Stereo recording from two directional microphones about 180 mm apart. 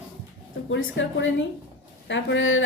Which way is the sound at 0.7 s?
90° left.